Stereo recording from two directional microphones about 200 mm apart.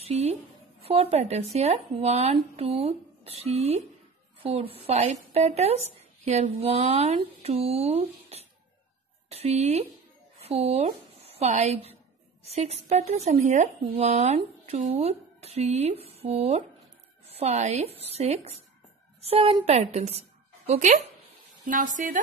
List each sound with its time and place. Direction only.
0.0 s a woman's voice: 30° right (ahead or behind)